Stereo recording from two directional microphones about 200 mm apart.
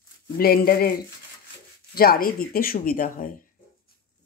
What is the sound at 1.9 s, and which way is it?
Speech, 50° left (ahead or behind).